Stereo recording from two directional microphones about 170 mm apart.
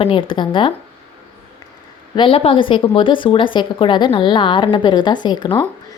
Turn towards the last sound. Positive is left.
turn(degrees=25)  # may be behind; listen again after turning